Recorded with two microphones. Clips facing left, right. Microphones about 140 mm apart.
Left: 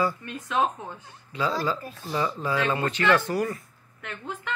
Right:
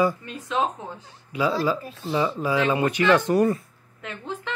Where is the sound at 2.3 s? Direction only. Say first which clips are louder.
Right 4 dB; 10° right (ahead or behind).